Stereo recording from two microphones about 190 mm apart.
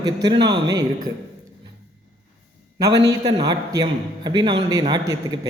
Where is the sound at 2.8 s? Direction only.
20° right (ahead or behind).